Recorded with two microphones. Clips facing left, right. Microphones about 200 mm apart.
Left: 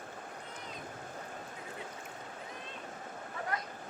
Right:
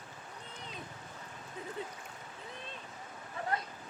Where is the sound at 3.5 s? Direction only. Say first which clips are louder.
Right 3 dB; 30° right (ahead or behind).